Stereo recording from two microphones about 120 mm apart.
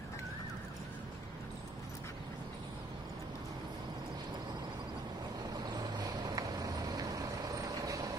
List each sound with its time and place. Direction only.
5.5 s vehicle: 35° right (ahead or behind)